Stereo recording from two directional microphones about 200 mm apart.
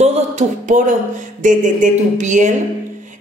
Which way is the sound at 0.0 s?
35° right (ahead or behind).